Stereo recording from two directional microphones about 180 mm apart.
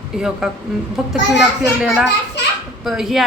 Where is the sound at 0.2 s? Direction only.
5° right (ahead or behind).